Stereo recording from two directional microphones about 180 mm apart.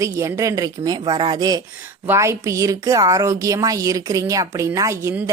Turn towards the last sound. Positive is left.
turn(degrees=-15)  # may be behind; listen again after turning